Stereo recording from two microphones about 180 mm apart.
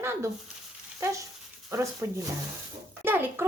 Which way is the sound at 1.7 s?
15° right (ahead or behind).